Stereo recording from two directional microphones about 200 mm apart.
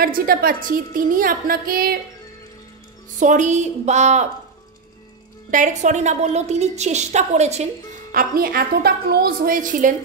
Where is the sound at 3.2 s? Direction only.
35° right (ahead or behind).